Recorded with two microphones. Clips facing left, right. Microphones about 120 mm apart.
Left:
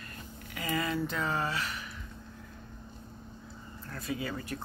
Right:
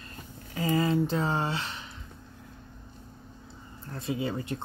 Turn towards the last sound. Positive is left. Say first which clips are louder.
# right 5 dB
turn(degrees=-25)  # may be behind; listen again after turning